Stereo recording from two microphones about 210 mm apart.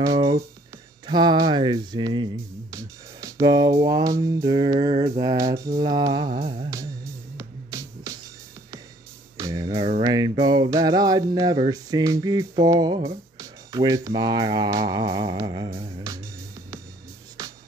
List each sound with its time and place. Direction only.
0.0 s music: 20° right (ahead or behind)
1.0 s speech: 20° right (ahead or behind)
5.2 s mantra: 15° right (ahead or behind)
6.6 s music: 15° right (ahead or behind)
9.4 s music: 15° right (ahead or behind)